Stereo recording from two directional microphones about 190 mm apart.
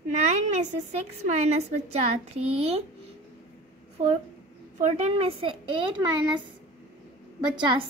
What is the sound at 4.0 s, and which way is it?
A woman's voice, 35° right (ahead or behind).